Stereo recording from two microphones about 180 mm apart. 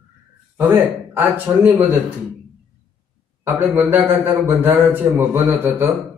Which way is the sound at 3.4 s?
10° right (ahead or behind).